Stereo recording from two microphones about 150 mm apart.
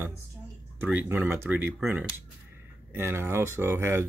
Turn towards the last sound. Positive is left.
turn(degrees=-15)  # may be behind; listen again after turning